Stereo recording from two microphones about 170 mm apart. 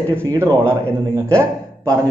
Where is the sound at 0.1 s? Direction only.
15° right (ahead or behind).